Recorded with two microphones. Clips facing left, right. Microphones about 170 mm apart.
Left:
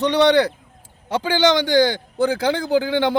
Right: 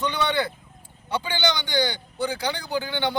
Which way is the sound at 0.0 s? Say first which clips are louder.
Left 10 dB; 75° left (ahead or behind).